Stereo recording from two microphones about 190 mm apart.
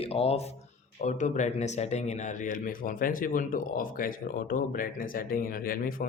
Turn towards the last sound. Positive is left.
turn(degrees=50)  # may be behind; listen again after turning